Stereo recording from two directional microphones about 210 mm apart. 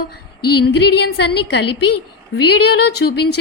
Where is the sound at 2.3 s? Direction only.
50° left (ahead or behind).